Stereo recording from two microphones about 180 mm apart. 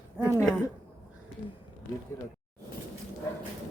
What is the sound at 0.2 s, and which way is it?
Speech, 15° right (ahead or behind).